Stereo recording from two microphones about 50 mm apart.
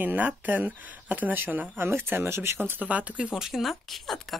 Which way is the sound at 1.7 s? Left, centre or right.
Right.